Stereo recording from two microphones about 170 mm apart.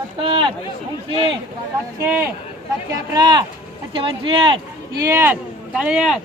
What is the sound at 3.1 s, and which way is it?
Speech, 25° right (ahead or behind).